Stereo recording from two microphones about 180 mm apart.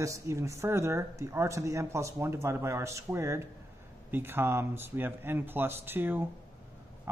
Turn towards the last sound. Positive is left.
turn(degrees=-10)  # may be behind; listen again after turning